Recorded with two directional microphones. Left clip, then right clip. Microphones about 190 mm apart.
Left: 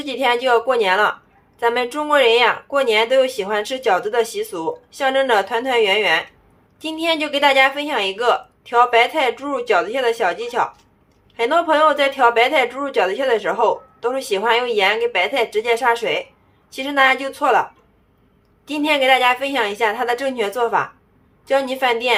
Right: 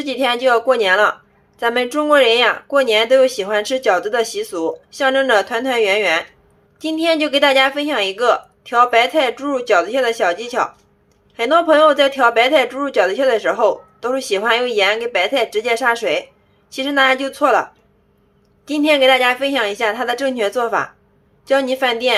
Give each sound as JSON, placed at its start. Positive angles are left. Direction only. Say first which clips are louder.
{"t": 0.0, "sound": "speech", "louder": "right 2 dB", "side_deg": -15}